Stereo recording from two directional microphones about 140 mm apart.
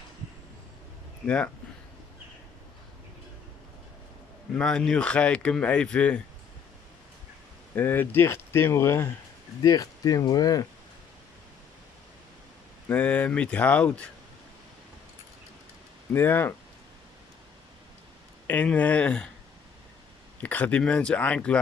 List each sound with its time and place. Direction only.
1.2 s speech: 10° left (ahead or behind)
4.6 s speech: 5° left (ahead or behind)
7.7 s speech: 15° left (ahead or behind)
12.8 s speech: 10° left (ahead or behind)
16.1 s speech: 15° left (ahead or behind)
18.5 s speech: 10° left (ahead or behind)
20.4 s speech: 10° left (ahead or behind)